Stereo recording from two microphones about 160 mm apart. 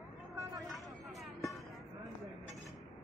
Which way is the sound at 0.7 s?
Centre (ahead or behind).